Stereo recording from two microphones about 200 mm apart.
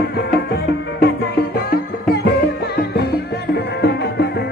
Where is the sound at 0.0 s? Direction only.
50° left (ahead or behind).